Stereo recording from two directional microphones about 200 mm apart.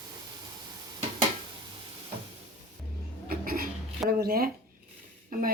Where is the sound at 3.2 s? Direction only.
45° right (ahead or behind).